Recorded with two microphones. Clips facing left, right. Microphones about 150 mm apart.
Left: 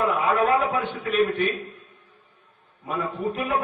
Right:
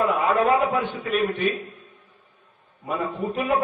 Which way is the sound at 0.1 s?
Centre (ahead or behind).